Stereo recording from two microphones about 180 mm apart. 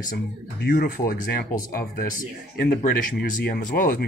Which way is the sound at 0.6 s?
55° left (ahead or behind).